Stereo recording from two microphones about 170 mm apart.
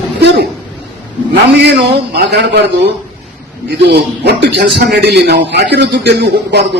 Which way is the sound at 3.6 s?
70° right (ahead or behind).